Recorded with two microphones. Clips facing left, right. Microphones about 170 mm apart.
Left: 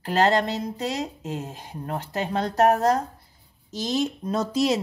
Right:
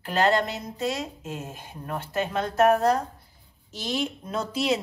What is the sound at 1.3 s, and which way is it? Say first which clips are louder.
A woman's voice: left 3 dB; 35° left (ahead or behind).